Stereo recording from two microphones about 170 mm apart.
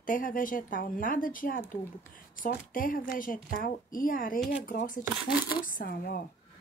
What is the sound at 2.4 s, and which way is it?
A woman's voice, 55° left (ahead or behind).